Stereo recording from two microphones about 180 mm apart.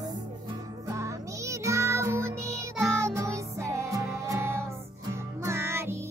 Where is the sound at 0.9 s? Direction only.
15° right (ahead or behind).